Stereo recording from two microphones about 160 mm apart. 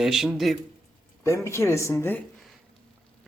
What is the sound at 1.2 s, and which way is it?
Speech, 15° left (ahead or behind).